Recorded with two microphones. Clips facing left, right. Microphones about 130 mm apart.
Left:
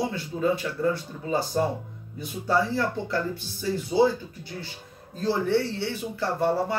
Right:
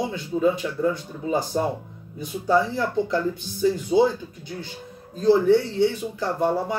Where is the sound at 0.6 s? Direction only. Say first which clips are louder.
Right 3 dB; 20° right (ahead or behind).